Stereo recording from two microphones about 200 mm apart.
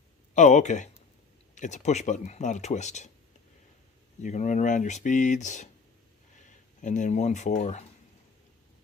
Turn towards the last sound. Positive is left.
turn(degrees=35)  # may be behind; listen again after turning